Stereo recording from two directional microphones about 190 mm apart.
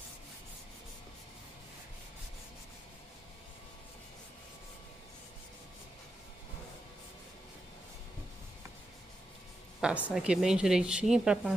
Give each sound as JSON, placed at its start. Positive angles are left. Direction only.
{"t": 9.8, "sound": "speech", "side_deg": -5}